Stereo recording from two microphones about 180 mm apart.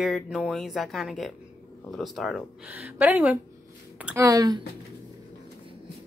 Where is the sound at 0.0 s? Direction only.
Centre (ahead or behind); by 4.6 s 20° right (ahead or behind).